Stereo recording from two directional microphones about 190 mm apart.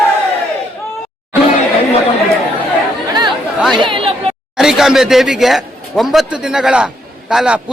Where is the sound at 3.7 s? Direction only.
25° right (ahead or behind).